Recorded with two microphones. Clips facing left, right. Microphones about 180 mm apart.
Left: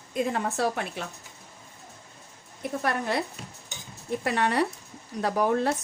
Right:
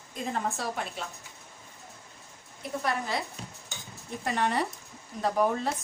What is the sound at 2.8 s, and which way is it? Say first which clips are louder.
Speech: left 3 dB; 60° left (ahead or behind).